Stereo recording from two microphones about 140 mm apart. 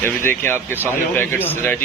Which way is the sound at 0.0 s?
15° left (ahead or behind).